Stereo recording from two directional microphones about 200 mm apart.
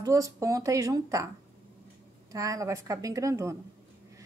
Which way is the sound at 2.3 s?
15° right (ahead or behind).